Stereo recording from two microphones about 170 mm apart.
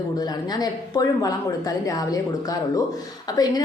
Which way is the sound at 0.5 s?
25° left (ahead or behind).